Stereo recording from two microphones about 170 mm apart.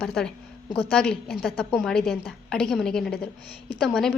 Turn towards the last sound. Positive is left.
turn(degrees=0)  # may be behind; listen again after turning